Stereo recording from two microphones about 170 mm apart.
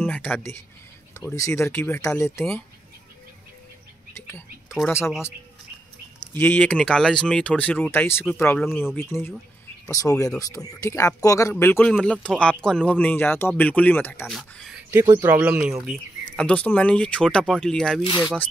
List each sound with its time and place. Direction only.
0.0 s a sound: 10° left (ahead or behind)
1.3 s speech: 15° left (ahead or behind)
4.6 s speech: centre (ahead or behind)
6.3 s speech: 10° left (ahead or behind)
14.3 s speech: centre (ahead or behind)
15.9 s speech: 5° left (ahead or behind)